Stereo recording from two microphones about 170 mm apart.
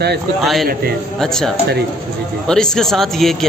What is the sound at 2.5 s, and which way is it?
Speech, 5° left (ahead or behind).